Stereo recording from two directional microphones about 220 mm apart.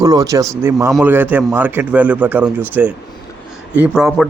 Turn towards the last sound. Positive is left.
turn(degrees=0)  # may be behind; listen again after turning